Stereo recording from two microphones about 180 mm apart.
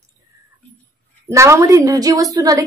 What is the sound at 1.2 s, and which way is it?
Speech, 15° right (ahead or behind).